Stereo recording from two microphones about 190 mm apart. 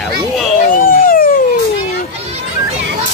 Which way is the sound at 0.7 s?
50° left (ahead or behind).